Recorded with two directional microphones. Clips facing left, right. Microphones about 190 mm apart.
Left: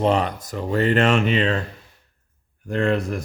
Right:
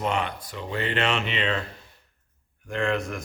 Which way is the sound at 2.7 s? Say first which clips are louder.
Left 5 dB; 35° left (ahead or behind).